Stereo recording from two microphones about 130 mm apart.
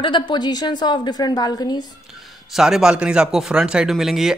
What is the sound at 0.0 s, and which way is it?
A woman's voice, 35° left (ahead or behind).